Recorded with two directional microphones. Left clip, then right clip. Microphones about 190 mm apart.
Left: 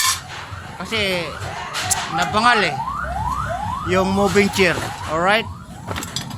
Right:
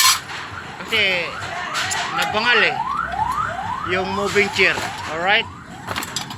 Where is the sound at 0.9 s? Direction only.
30° left (ahead or behind).